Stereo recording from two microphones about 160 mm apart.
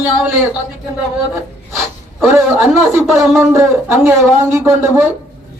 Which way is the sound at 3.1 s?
15° right (ahead or behind).